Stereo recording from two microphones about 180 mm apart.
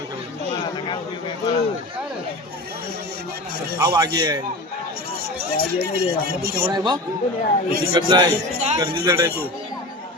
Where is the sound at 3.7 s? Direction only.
20° right (ahead or behind).